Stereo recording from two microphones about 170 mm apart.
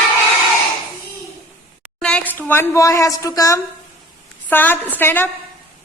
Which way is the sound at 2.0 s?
5° left (ahead or behind).